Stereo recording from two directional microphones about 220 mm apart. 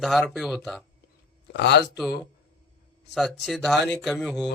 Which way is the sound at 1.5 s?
50° left (ahead or behind).